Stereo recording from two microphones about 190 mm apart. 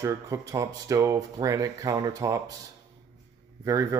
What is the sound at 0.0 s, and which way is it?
Speech, 15° right (ahead or behind).